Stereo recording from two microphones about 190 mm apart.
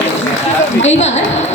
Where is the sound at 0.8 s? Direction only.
35° left (ahead or behind).